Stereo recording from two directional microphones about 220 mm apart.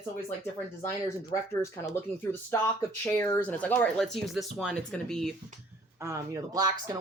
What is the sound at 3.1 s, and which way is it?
Speech, 10° left (ahead or behind).